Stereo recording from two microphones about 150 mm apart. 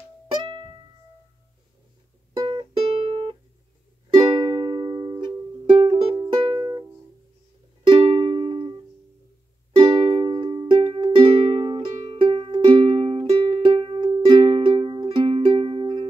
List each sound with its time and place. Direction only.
0.4 s music: 30° right (ahead or behind)
2.3 s music: 30° right (ahead or behind)
7.8 s music: 35° right (ahead or behind)